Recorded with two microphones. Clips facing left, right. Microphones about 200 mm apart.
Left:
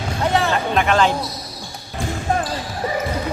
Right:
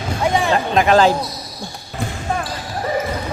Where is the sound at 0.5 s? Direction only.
35° right (ahead or behind).